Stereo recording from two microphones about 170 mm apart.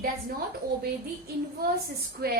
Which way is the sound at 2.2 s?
60° right (ahead or behind).